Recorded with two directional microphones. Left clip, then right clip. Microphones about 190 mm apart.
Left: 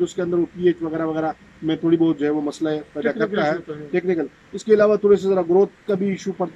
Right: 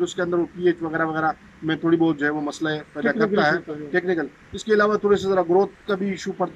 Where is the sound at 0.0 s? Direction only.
15° left (ahead or behind).